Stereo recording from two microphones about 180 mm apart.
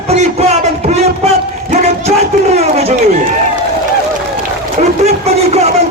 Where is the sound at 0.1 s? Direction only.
35° right (ahead or behind).